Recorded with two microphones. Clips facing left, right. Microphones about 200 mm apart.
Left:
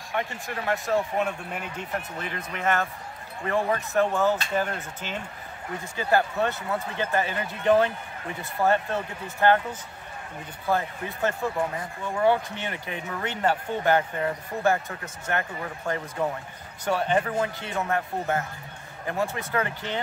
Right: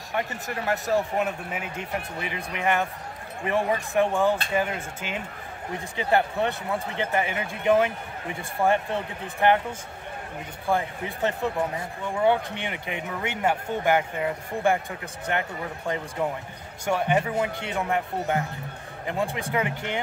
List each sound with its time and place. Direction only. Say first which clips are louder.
0.8 s speech: right 1 dB; 5° right (ahead or behind)
10.7 s speech: right 1 dB; 15° right (ahead or behind)
12.6 s speech: right 1 dB; 15° right (ahead or behind)